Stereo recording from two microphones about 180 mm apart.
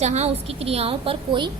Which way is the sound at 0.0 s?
35° right (ahead or behind).